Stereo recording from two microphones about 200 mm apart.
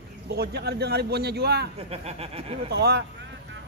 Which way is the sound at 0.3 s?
55° right (ahead or behind).